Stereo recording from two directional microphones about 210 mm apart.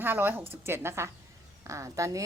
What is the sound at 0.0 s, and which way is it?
A woman's voice, 10° right (ahead or behind).